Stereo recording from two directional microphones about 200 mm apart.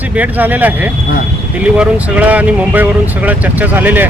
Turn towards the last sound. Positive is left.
turn(degrees=-10)  # may be behind; listen again after turning